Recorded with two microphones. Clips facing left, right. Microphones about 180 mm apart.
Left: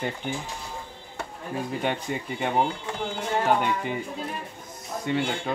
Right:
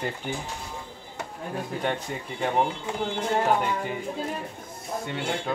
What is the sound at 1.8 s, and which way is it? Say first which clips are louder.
Speech: left 1 dB; centre (ahead or behind).